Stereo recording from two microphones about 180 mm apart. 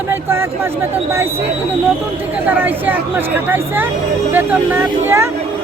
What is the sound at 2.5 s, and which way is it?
Speech, 10° right (ahead or behind).